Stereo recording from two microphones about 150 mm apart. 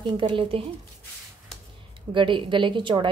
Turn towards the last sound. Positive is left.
turn(degrees=-35)  # may be behind; listen again after turning